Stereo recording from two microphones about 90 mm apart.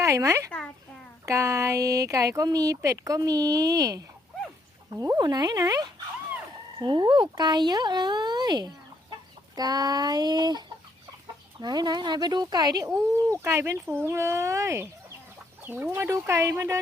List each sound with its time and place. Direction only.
0.0 s speech: 35° right (ahead or behind)
5.2 s speech: 50° right (ahead or behind)
6.7 s speech: 55° right (ahead or behind)
11.6 s speech: 50° right (ahead or behind)
13.3 s speech: 30° right (ahead or behind)
15.6 s speech: 20° right (ahead or behind)